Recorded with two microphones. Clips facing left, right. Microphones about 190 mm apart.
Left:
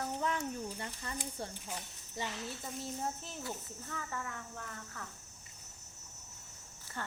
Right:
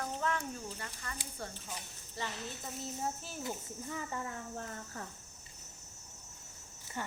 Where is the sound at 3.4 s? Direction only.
15° right (ahead or behind); by 5.1 s 35° right (ahead or behind).